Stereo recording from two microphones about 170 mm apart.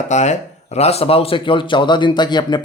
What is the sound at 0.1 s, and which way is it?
A man's voice, 45° left (ahead or behind).